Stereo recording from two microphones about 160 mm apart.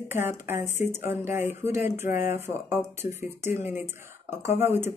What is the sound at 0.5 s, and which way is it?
Speech, 45° left (ahead or behind).